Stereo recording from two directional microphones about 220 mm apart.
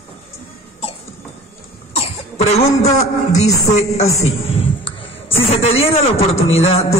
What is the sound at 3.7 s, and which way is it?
A man's voice, 30° left (ahead or behind).